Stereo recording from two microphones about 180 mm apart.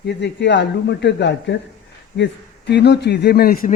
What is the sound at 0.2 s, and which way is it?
A man's voice, 75° left (ahead or behind).